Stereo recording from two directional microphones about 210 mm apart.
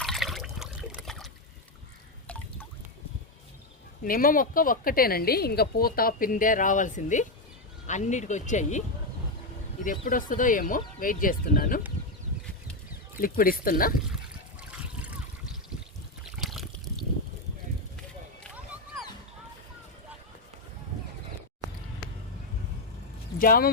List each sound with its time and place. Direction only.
0.0 s water: centre (ahead or behind)
2.2 s a sound: 5° left (ahead or behind)
4.0 s speech: 45° left (ahead or behind)
9.8 s speech: 40° left (ahead or behind)
13.1 s speech: 45° left (ahead or behind)
14.7 s trickle: 5° right (ahead or behind)
16.2 s trickle: centre (ahead or behind)
23.4 s speech: 45° left (ahead or behind)